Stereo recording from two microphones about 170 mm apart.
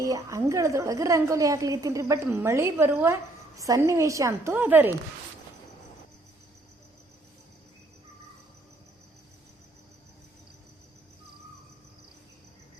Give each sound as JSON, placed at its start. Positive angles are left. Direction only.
{"t": 0.0, "sound": "a woman's voice", "side_deg": -20}